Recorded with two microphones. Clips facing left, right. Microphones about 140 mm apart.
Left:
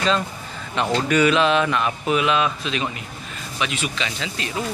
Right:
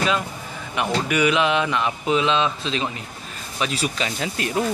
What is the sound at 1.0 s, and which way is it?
Speech, 15° right (ahead or behind).